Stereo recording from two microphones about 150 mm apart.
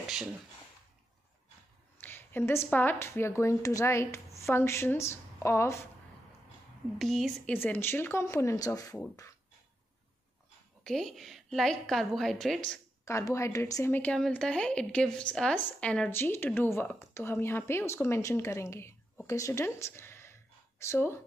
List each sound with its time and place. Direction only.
2.0 s a woman's voice: 15° left (ahead or behind)
7.0 s a woman's voice: centre (ahead or behind)
7.5 s a woman's voice: 15° left (ahead or behind)
10.8 s a woman's voice: centre (ahead or behind)
13.0 s a woman's voice: 20° left (ahead or behind)